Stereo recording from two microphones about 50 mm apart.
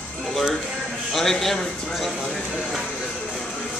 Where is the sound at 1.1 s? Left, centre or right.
Centre.